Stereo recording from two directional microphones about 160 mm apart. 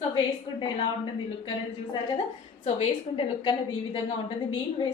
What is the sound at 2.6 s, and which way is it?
A woman's voice, 35° left (ahead or behind).